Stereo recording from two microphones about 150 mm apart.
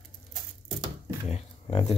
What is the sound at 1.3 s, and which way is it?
Speech, 40° left (ahead or behind).